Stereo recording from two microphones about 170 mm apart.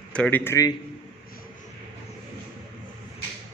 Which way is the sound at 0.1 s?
10° left (ahead or behind).